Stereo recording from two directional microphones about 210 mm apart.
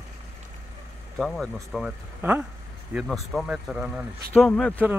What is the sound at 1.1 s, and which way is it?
Speech, centre (ahead or behind).